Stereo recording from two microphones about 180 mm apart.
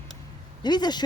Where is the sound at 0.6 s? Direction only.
25° left (ahead or behind).